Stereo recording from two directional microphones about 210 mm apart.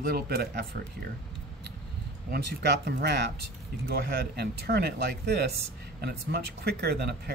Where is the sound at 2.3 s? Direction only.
50° right (ahead or behind).